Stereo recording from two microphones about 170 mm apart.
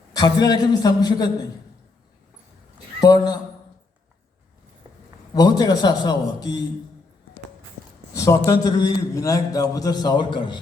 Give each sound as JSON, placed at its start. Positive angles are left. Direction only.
{"t": 0.1, "sound": "a man's voice", "side_deg": 25}
{"t": 3.0, "sound": "a man's voice", "side_deg": 25}
{"t": 5.3, "sound": "a man's voice", "side_deg": 25}
{"t": 8.1, "sound": "a man's voice", "side_deg": 20}